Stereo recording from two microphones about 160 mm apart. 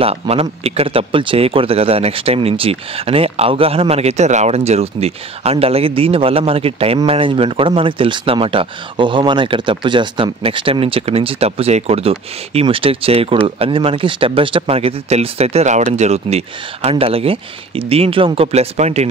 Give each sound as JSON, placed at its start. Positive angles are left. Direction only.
{"t": 0.0, "sound": "speech", "side_deg": -40}